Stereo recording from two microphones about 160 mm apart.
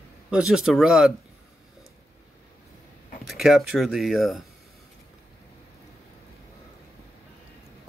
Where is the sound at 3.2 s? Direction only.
Centre (ahead or behind).